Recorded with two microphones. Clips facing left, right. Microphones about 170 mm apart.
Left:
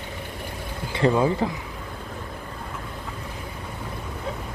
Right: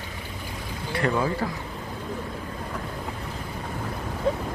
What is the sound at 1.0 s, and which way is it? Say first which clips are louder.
Speech: left 4 dB; 25° left (ahead or behind).